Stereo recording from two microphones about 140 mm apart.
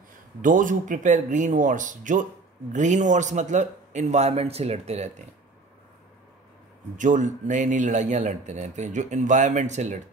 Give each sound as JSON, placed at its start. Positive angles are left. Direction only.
{"t": 0.4, "sound": "speech", "side_deg": -70}
{"t": 7.0, "sound": "speech", "side_deg": -65}